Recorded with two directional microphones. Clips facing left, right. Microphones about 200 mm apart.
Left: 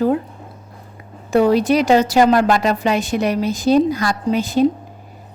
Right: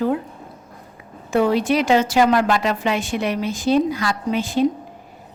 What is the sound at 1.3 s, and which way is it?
A woman's voice, 40° left (ahead or behind).